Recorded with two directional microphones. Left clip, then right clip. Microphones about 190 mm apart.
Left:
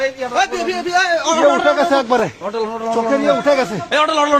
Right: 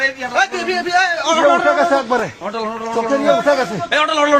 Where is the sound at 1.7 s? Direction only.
35° left (ahead or behind).